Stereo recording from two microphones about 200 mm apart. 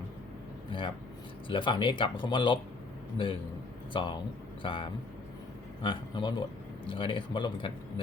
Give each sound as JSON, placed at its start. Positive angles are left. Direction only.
{"t": 0.7, "sound": "a sound", "side_deg": 25}
{"t": 1.5, "sound": "a man's voice", "side_deg": 25}
{"t": 3.9, "sound": "a man's voice", "side_deg": 20}